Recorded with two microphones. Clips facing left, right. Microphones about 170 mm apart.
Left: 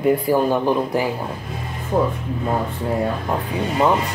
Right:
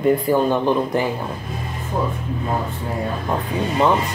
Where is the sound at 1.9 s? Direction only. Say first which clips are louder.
Left 5 dB; 60° left (ahead or behind).